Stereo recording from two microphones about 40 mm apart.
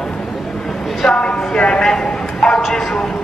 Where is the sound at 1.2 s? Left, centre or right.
Left.